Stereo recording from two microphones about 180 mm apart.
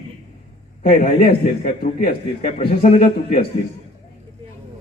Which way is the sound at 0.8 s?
55° left (ahead or behind).